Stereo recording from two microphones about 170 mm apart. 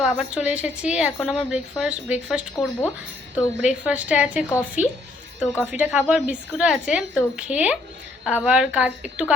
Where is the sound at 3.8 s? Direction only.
10° right (ahead or behind).